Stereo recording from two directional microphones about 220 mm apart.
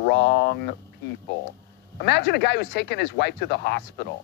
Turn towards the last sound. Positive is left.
turn(degrees=50)  # may be behind; listen again after turning